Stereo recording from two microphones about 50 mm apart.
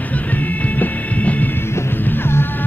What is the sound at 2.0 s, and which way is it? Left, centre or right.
Music, left.